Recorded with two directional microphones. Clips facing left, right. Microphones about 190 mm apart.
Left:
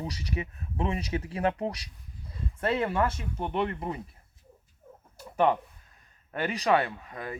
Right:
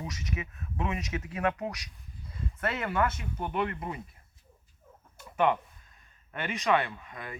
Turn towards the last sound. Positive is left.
turn(degrees=35)  # may be behind; listen again after turning